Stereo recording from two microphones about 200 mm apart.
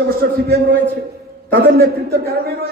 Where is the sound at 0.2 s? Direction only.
60° right (ahead or behind).